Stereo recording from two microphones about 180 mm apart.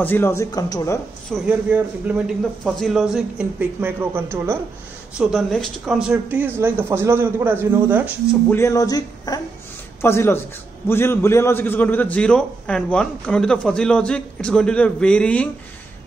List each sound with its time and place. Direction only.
0.0 s a man's voice: 10° left (ahead or behind)
1.3 s a man's voice: 5° right (ahead or behind)
8.5 s a man's voice: 15° left (ahead or behind)